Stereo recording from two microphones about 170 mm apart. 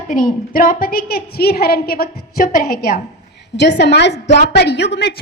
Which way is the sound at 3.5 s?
90° left.